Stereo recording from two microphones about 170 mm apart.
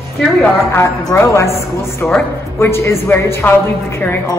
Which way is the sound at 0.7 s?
15° left (ahead or behind).